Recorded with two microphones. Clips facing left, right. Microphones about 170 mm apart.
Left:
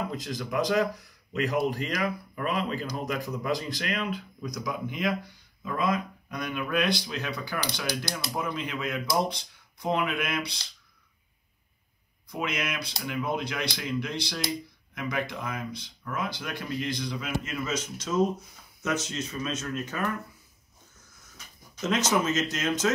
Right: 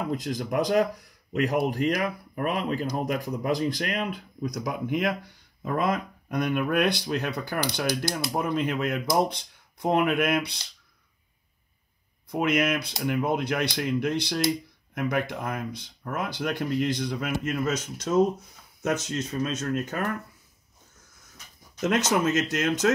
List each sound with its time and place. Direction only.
0.1 s speech: 60° right (ahead or behind)
12.3 s speech: 55° right (ahead or behind)
16.1 s speech: 60° right (ahead or behind)
21.8 s speech: 60° right (ahead or behind)